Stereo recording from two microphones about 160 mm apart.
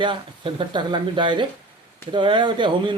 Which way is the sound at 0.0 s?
30° right (ahead or behind).